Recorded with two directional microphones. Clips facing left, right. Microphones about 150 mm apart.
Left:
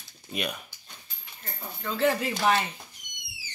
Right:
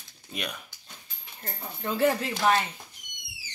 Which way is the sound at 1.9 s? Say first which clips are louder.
Right 1 dB; 10° right (ahead or behind).